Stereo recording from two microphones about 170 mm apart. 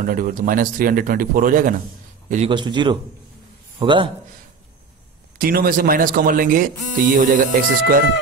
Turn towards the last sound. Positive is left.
turn(degrees=-50)  # may be behind; listen again after turning